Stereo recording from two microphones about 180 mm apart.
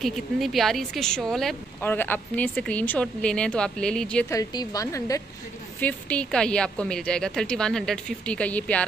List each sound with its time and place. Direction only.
0.0 s a woman's voice: centre (ahead or behind)
4.3 s a woman's voice: 20° left (ahead or behind)
5.8 s a woman's voice: 10° left (ahead or behind)